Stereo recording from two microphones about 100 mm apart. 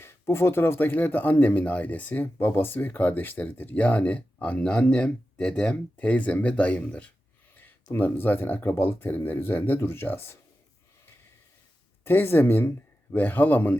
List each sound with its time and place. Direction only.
0.0 s speech: 25° left (ahead or behind)
12.0 s speech: 25° left (ahead or behind)